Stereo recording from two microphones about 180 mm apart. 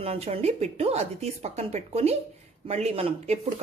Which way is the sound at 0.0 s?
35° right (ahead or behind).